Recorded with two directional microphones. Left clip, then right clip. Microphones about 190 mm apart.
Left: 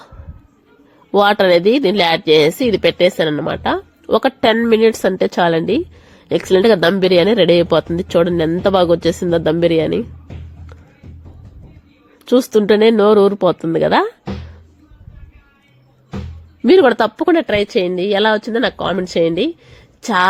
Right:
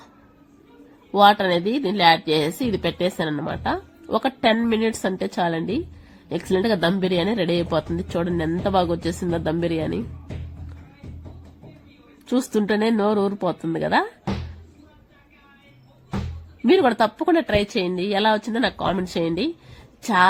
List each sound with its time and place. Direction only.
1.1 s a woman's voice: 35° left (ahead or behind)
12.2 s a woman's voice: 30° left (ahead or behind)
16.6 s a woman's voice: 30° left (ahead or behind)